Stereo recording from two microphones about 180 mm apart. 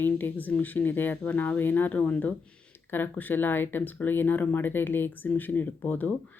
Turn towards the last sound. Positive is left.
turn(degrees=15)  # may be behind; listen again after turning